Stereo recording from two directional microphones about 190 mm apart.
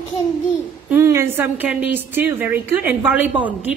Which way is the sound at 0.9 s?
15° right (ahead or behind).